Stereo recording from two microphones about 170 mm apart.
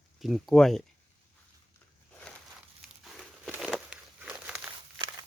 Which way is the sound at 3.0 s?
Centre (ahead or behind).